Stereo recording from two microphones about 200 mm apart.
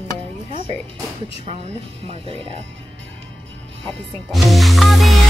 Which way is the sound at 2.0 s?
30° right (ahead or behind).